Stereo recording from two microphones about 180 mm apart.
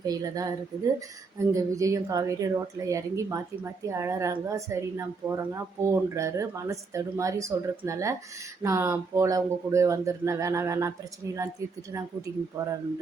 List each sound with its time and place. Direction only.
0.0 s speech: 20° right (ahead or behind)